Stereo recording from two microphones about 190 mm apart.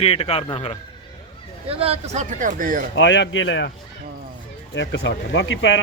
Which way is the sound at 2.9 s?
70° left (ahead or behind).